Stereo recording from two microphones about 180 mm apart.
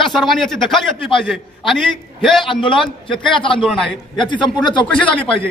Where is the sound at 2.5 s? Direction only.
25° left (ahead or behind).